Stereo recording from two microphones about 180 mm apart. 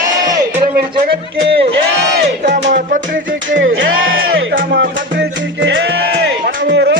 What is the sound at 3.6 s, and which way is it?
Music, 90° right.